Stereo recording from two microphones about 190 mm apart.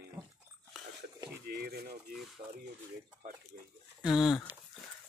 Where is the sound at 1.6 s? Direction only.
55° right (ahead or behind).